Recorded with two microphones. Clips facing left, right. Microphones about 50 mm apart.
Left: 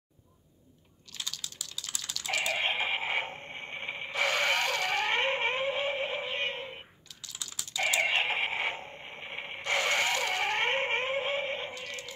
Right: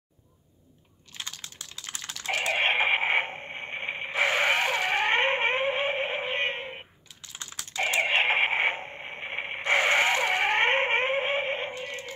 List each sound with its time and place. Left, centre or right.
1.1 s typing: right
7.5 s typing: right